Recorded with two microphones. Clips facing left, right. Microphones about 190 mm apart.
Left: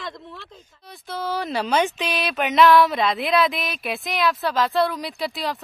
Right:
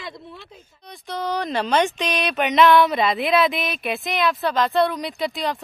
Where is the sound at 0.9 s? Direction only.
5° left (ahead or behind).